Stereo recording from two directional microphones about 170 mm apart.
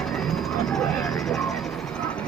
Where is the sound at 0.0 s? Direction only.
Centre (ahead or behind).